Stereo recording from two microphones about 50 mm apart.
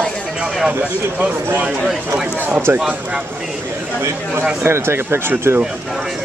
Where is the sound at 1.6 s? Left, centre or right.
Centre.